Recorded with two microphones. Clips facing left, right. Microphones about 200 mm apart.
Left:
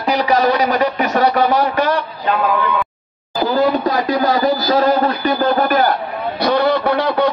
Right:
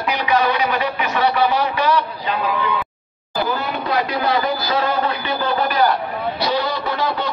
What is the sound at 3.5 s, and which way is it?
Speech, 40° left (ahead or behind).